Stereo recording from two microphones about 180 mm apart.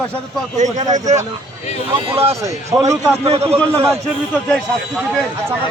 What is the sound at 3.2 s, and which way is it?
Speech, 35° right (ahead or behind).